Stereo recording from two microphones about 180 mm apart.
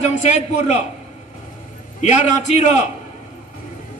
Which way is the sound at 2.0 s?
40° left (ahead or behind).